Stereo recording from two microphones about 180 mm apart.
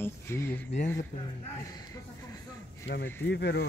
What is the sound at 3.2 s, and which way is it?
Speech, 70° left (ahead or behind).